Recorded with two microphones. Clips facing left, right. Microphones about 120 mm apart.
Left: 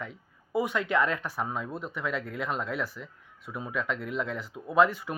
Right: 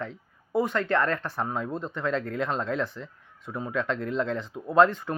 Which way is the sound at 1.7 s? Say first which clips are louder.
Right 4 dB; 25° right (ahead or behind).